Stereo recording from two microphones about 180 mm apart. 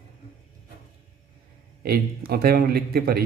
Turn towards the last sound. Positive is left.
turn(degrees=-60)  # may be behind; listen again after turning